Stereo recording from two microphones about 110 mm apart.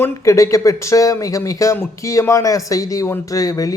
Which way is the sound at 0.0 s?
25° left (ahead or behind).